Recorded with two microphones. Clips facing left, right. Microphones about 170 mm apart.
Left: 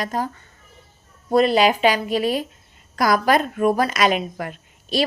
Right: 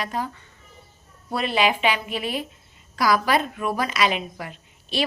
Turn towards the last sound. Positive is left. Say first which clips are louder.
# left 5 dB
turn(degrees=45)  # may be behind; listen again after turning